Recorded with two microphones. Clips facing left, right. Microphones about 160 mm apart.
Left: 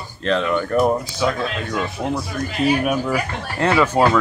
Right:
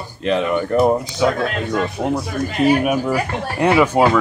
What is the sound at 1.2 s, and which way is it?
Speech, 50° right (ahead or behind).